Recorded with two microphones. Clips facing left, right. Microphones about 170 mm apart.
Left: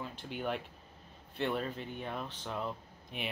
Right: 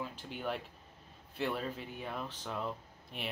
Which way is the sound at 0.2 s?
Centre (ahead or behind).